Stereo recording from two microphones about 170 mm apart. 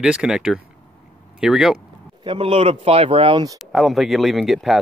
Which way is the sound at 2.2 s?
35° right (ahead or behind).